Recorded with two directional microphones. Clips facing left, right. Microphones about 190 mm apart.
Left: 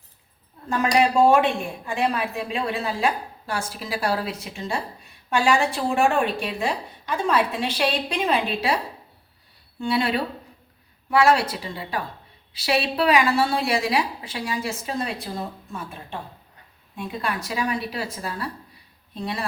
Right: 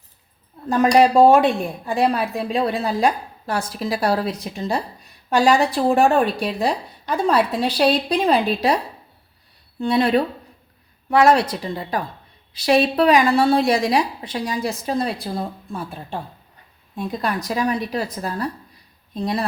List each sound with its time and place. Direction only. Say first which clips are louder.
0.7 s a woman's voice: right 6 dB; 35° right (ahead or behind)
9.8 s a woman's voice: right 6 dB; 40° right (ahead or behind)